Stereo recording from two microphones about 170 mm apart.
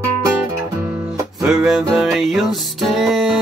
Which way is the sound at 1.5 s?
Centre (ahead or behind).